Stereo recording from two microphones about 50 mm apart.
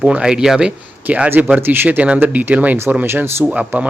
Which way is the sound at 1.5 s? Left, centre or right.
Right.